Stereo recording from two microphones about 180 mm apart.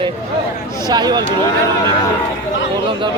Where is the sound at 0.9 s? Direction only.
25° right (ahead or behind).